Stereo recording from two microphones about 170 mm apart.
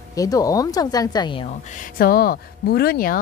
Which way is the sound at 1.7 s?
55° left (ahead or behind).